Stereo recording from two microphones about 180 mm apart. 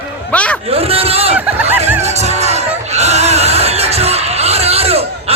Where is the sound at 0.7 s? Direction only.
35° right (ahead or behind).